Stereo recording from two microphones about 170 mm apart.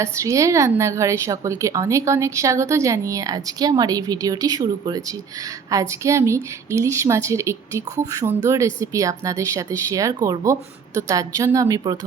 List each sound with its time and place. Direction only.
0.0 s a woman's voice: 15° right (ahead or behind)
6.0 s a woman's voice: 15° right (ahead or behind)